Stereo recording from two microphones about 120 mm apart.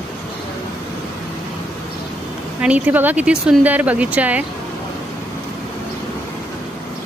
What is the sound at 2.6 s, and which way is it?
Speech, 15° right (ahead or behind).